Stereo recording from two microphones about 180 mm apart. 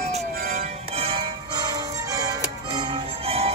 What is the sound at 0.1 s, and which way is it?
Music, 40° right (ahead or behind).